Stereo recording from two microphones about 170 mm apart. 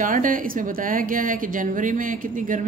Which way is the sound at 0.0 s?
50° right (ahead or behind).